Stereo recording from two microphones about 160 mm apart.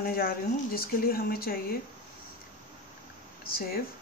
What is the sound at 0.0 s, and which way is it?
Speech, 65° left (ahead or behind).